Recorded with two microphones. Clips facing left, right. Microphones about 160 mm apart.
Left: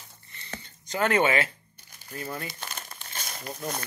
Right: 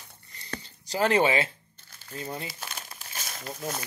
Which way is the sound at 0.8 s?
35° right (ahead or behind).